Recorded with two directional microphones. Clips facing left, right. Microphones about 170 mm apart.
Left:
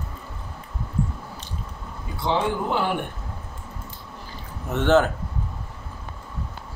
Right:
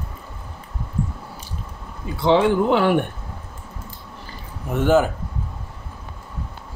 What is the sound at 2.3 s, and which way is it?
Speech, 85° right.